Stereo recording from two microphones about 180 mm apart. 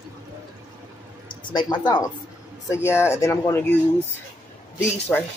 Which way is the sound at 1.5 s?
25° left (ahead or behind).